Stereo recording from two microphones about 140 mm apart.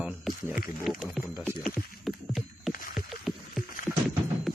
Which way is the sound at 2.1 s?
Centre (ahead or behind).